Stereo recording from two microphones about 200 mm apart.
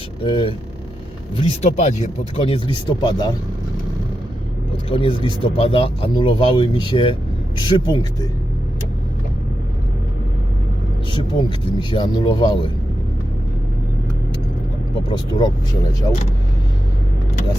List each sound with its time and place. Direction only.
0.2 s speech: 25° left (ahead or behind)
4.9 s speech: 25° left (ahead or behind)
11.1 s speech: 25° left (ahead or behind)
15.3 s speech: 20° left (ahead or behind)